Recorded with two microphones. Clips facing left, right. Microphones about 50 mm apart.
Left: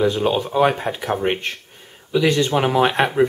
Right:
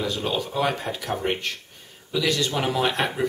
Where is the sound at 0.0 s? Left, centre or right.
Left.